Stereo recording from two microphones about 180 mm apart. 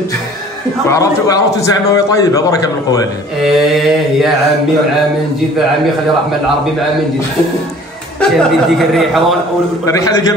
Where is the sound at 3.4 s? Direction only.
Centre (ahead or behind).